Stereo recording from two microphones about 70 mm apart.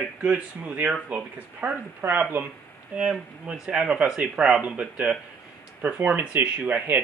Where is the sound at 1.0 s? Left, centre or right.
Right.